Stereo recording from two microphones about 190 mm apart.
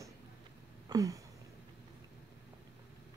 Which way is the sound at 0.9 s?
20° right (ahead or behind).